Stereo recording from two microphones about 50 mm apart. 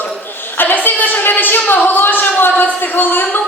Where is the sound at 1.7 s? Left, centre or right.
Left.